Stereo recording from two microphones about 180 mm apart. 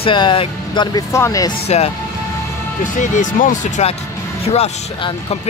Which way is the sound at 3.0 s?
45° left (ahead or behind).